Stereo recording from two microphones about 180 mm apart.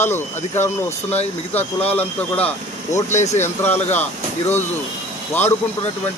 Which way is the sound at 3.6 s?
10° left (ahead or behind).